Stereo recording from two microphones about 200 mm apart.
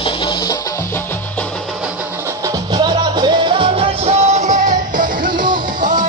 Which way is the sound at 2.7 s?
20° right (ahead or behind).